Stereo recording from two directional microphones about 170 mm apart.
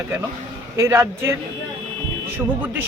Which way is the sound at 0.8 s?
15° right (ahead or behind).